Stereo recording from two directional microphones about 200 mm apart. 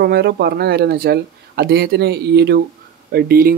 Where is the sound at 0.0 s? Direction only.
50° right (ahead or behind).